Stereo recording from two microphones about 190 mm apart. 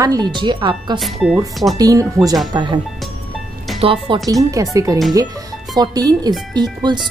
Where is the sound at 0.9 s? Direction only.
Centre (ahead or behind).